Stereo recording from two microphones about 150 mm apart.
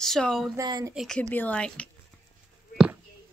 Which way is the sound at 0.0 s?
Centre (ahead or behind).